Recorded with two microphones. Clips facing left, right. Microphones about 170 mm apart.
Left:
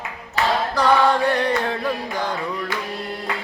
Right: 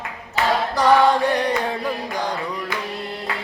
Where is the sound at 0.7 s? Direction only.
20° right (ahead or behind).